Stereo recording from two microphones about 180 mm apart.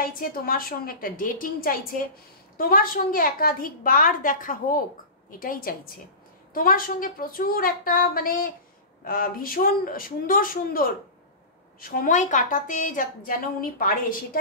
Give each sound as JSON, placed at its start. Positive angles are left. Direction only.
{"t": 0.0, "sound": "a woman's voice", "side_deg": 55}